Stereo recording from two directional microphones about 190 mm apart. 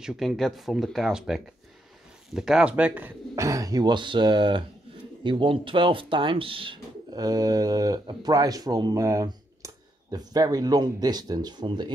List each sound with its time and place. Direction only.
0.0 s speech: 5° right (ahead or behind); by 11.9 s 25° right (ahead or behind)